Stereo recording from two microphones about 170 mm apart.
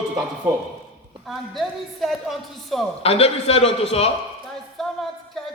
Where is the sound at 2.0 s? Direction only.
Centre (ahead or behind).